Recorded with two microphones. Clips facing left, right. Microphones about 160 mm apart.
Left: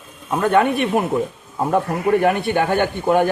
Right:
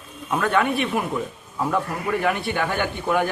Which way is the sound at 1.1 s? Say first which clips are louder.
Left 6 dB; 35° left (ahead or behind).